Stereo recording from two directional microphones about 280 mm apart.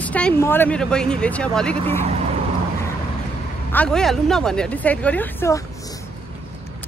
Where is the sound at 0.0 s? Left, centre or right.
Centre.